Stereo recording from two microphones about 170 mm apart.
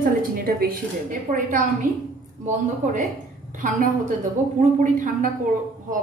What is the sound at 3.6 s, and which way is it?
A woman's voice, 50° right (ahead or behind).